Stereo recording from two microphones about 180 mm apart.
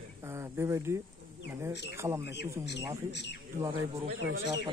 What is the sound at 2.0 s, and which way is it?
Speech, 15° right (ahead or behind).